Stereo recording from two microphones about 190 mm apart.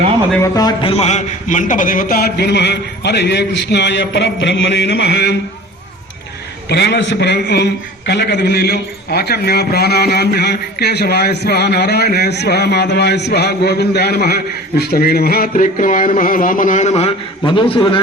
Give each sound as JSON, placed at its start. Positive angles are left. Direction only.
{"t": 0.4, "sound": "a man's voice", "side_deg": 20}
{"t": 6.7, "sound": "a man's voice", "side_deg": 60}